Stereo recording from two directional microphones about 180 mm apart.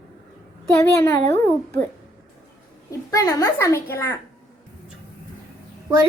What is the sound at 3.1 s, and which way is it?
A child's voice, 20° left (ahead or behind).